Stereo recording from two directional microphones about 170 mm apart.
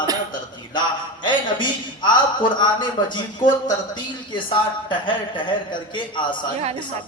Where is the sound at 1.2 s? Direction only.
25° left (ahead or behind).